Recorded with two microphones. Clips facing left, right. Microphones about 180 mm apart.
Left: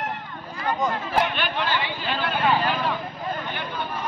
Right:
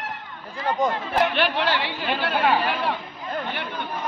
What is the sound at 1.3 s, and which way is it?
A man's voice, 80° right.